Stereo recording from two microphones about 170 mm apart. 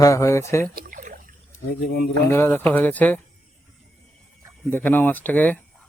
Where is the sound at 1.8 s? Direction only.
65° left (ahead or behind).